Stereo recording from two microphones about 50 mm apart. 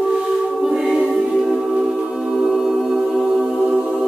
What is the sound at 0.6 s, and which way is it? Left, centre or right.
A capella, centre.